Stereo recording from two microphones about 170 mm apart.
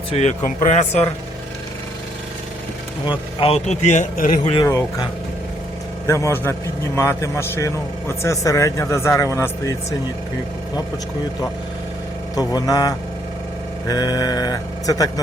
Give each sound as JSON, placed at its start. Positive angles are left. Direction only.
{"t": 0.1, "sound": "speech", "side_deg": 40}
{"t": 3.1, "sound": "speech", "side_deg": 35}
{"t": 4.6, "sound": "a man's voice", "side_deg": 15}
{"t": 6.1, "sound": "a man's voice", "side_deg": 15}
{"t": 12.4, "sound": "sheep", "side_deg": 20}